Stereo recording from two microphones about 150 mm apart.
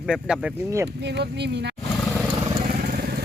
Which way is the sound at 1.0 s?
90° right.